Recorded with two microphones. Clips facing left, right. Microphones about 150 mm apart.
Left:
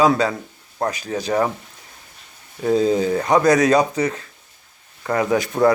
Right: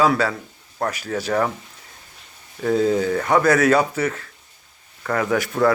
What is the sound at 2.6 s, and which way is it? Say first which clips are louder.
Speech: left 1 dB; 20° left (ahead or behind).